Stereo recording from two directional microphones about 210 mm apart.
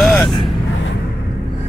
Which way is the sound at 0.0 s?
Centre (ahead or behind).